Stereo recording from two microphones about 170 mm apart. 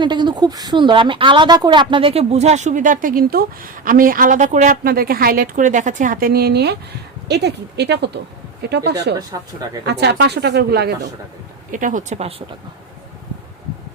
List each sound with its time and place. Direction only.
0.0 s speech: 25° right (ahead or behind); by 11.1 s 70° right (ahead or behind)
11.7 s speech: 50° right (ahead or behind)